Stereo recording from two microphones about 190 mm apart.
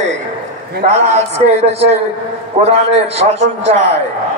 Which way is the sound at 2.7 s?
30° right (ahead or behind).